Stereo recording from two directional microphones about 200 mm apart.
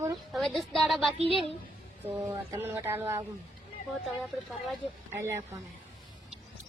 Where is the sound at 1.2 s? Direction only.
30° left (ahead or behind).